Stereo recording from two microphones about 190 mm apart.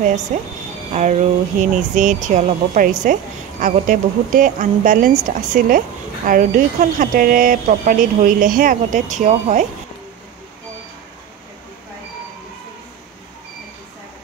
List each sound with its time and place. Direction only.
0.3 s speech: 40° right (ahead or behind)